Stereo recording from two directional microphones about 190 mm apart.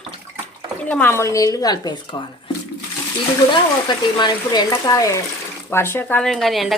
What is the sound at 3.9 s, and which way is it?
A woman's voice, 25° left (ahead or behind).